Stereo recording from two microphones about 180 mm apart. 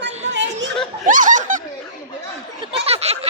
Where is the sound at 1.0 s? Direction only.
45° right (ahead or behind).